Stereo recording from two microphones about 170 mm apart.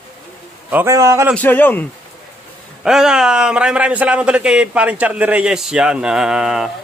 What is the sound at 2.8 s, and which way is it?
A man's voice, 5° right (ahead or behind).